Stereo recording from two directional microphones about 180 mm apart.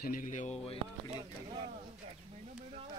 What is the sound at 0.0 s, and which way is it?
Speech, 50° left (ahead or behind).